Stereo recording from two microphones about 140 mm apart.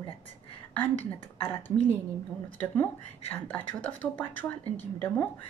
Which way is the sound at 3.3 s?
10° left (ahead or behind).